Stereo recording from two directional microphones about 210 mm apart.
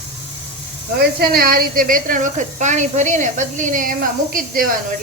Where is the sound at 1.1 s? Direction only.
45° right (ahead or behind).